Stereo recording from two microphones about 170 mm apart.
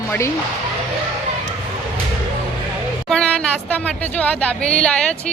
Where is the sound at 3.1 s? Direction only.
5° left (ahead or behind).